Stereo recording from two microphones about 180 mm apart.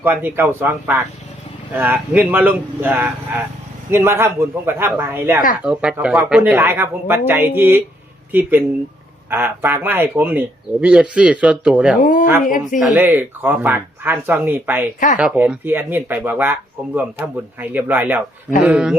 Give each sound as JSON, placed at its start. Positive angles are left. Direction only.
{"t": 0.0, "sound": "speech", "side_deg": -10}
{"t": 12.5, "sound": "speech", "side_deg": 50}
{"t": 12.8, "sound": "a man's voice", "side_deg": -10}